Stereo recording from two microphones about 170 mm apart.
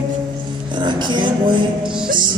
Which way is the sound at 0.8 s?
25° right (ahead or behind).